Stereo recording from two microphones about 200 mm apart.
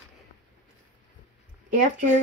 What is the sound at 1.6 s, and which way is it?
Speech, 45° right (ahead or behind).